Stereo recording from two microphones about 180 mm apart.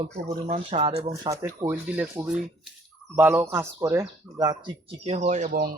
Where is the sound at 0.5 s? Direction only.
30° right (ahead or behind).